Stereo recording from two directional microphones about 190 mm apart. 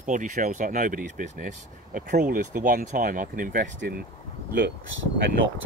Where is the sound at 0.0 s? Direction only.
40° right (ahead or behind).